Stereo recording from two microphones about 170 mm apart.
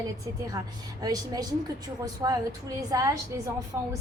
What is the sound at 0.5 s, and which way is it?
A woman's voice, 20° right (ahead or behind).